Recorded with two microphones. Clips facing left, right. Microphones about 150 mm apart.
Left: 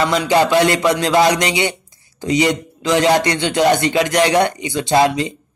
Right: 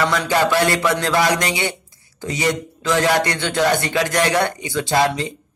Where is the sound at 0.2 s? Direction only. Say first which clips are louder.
Left 4 dB; 20° left (ahead or behind).